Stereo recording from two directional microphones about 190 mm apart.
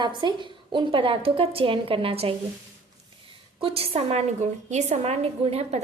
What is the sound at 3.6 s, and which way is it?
A woman's voice, 30° right (ahead or behind).